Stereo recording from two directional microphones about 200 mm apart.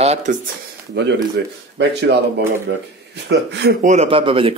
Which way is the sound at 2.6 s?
60° right (ahead or behind).